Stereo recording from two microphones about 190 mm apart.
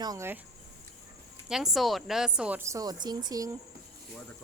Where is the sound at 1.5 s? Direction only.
Centre (ahead or behind); by 3.5 s 20° right (ahead or behind).